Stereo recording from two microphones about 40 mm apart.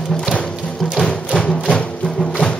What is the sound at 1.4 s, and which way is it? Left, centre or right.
Music, centre.